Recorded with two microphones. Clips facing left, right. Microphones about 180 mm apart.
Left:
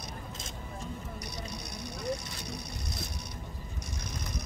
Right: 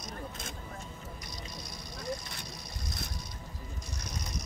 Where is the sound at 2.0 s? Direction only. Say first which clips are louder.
Left 3 dB; 65° left (ahead or behind).